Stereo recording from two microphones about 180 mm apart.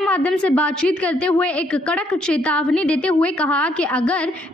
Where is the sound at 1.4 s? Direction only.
5° left (ahead or behind).